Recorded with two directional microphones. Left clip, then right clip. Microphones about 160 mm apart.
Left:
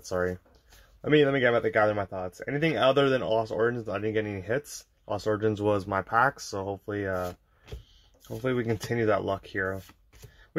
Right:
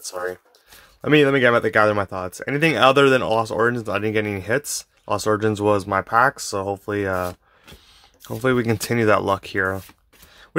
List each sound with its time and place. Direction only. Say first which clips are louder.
1.0 s speech: right 7 dB; 35° right (ahead or behind)
8.4 s speech: right 9 dB; 40° right (ahead or behind)